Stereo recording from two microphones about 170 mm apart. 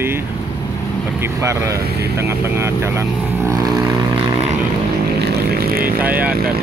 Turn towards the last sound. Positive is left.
turn(degrees=-10)  # may be behind; listen again after turning